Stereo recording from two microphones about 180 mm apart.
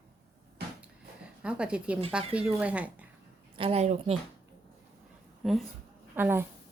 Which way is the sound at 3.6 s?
35° right (ahead or behind).